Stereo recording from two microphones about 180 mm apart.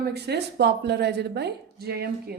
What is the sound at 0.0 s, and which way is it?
A woman's voice, 65° right (ahead or behind).